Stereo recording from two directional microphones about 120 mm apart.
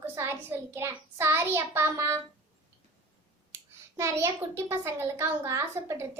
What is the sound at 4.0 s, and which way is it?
A child's voice, 20° right (ahead or behind).